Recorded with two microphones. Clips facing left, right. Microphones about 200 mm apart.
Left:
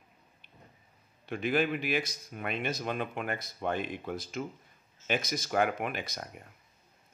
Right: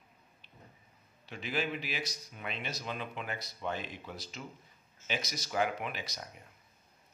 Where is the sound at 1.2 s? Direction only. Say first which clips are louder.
Left 7 dB; 55° left (ahead or behind).